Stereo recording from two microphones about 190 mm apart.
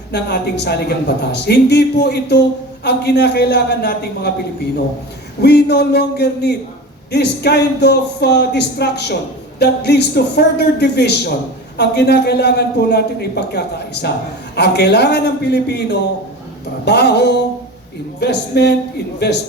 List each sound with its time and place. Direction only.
0.1 s a woman's voice: 60° left (ahead or behind)
5.4 s a woman's voice: 60° left (ahead or behind)